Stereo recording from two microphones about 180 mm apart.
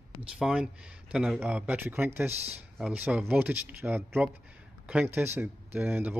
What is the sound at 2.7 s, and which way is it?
Speech, 5° right (ahead or behind).